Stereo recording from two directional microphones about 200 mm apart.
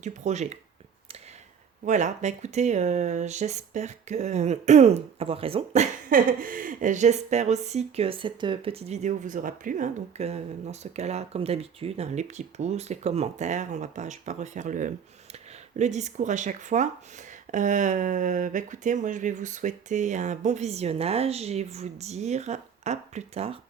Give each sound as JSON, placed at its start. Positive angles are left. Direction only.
{"t": 0.0, "sound": "speech", "side_deg": -35}
{"t": 1.8, "sound": "speech", "side_deg": -35}